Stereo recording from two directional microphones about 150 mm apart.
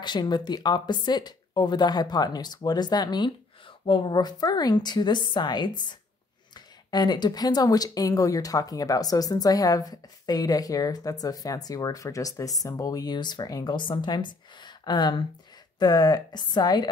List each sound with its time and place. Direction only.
0.0 s speech: 30° left (ahead or behind)